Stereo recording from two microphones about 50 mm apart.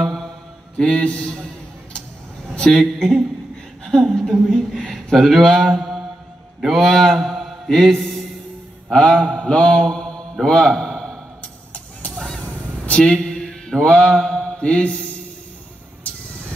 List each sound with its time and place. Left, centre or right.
0.0 s mantra: centre
0.7 s a man's voice: centre
2.5 s a man's voice: centre
6.9 s mantra: centre
8.9 s mantra: centre
10.4 s a sound: centre
12.4 s mantra: left
16.0 s vehicle: left